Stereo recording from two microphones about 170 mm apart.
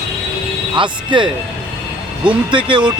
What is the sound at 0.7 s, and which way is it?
Speech, 30° right (ahead or behind).